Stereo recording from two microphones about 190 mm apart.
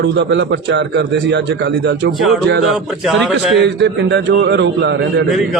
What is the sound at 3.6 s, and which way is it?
Speech, 65° right (ahead or behind).